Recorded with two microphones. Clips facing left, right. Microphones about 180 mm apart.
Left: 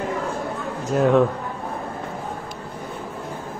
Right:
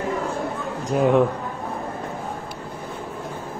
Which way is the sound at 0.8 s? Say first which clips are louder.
Left 1 dB; 15° right (ahead or behind).